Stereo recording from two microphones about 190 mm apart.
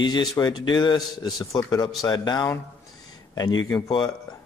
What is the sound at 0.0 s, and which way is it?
Speech, 20° left (ahead or behind).